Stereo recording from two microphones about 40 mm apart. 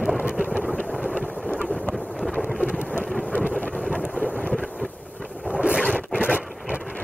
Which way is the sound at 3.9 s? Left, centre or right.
Left.